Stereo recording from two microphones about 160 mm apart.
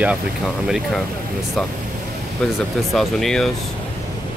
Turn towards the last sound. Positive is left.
turn(degrees=0)  # may be behind; listen again after turning